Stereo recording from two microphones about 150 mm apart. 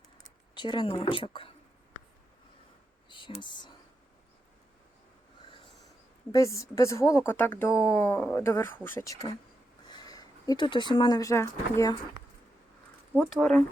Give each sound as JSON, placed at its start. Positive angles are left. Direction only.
{"t": 0.5, "sound": "speech", "side_deg": 30}
{"t": 3.1, "sound": "a sound", "side_deg": 30}
{"t": 3.4, "sound": "speech", "side_deg": 30}
{"t": 6.3, "sound": "a woman's voice", "side_deg": 20}
{"t": 9.9, "sound": "speech", "side_deg": 25}
{"t": 13.1, "sound": "speech", "side_deg": 5}